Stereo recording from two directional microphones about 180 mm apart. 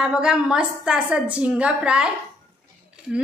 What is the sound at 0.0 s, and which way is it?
A woman's voice, 5° right (ahead or behind).